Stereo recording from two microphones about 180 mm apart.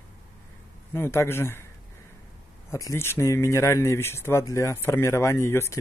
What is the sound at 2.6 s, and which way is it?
Speech, 15° left (ahead or behind).